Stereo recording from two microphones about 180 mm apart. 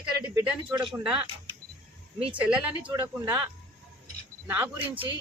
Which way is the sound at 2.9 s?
20° right (ahead or behind).